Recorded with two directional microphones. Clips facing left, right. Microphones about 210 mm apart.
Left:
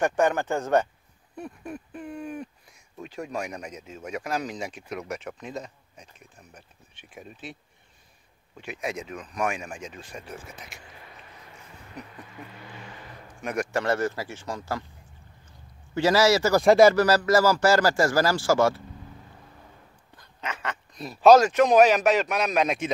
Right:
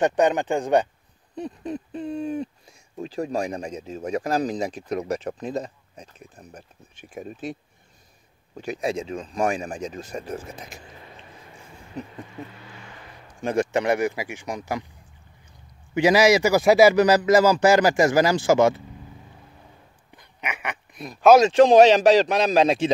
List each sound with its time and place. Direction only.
0.0 s a man's voice: 20° right (ahead or behind)
1.3 s a sound: 20° right (ahead or behind)
3.0 s speech: 35° right (ahead or behind)
8.5 s speech: 35° right (ahead or behind)
11.9 s a man's voice: 25° right (ahead or behind)
15.9 s a man's voice: 15° right (ahead or behind)
16.9 s a man's voice: 15° right (ahead or behind)
20.2 s a sound: 15° right (ahead or behind)
21.0 s speech: centre (ahead or behind)
21.4 s speech: 30° right (ahead or behind)